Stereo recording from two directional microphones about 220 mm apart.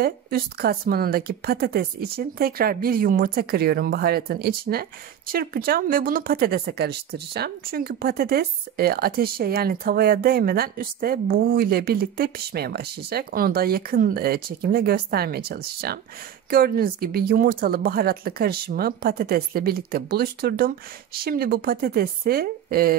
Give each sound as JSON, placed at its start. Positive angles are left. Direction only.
{"t": 0.0, "sound": "speech", "side_deg": -45}